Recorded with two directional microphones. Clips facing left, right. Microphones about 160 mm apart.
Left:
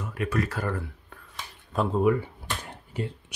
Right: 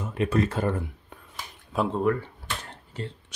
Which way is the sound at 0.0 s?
25° right (ahead or behind).